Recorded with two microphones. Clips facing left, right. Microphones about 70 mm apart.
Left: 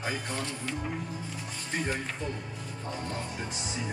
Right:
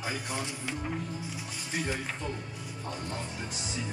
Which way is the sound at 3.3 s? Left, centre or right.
Left.